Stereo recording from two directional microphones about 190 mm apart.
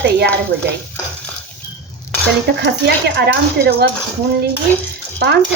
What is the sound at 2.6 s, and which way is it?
Speech, 60° right (ahead or behind).